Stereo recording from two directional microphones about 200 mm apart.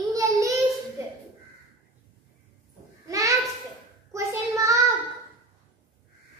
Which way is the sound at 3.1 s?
15° right (ahead or behind).